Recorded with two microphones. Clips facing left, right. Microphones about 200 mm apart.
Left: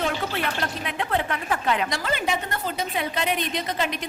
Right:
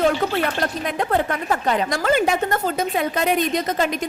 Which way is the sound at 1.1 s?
40° right (ahead or behind).